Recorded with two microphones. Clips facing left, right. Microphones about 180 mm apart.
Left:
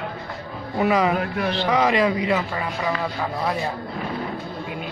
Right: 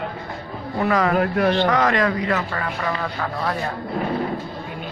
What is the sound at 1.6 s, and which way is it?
Speech, 10° left (ahead or behind).